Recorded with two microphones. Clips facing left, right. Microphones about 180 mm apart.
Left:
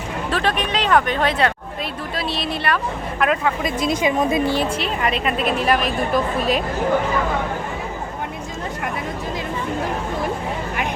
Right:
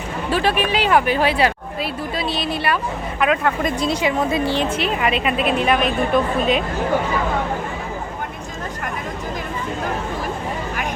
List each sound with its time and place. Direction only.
0.3 s a woman's voice: 5° right (ahead or behind)
4.0 s speech: 20° left (ahead or behind)
4.9 s a woman's voice: 10° right (ahead or behind)